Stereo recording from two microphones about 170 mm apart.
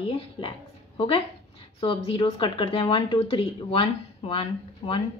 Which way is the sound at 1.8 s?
35° left (ahead or behind).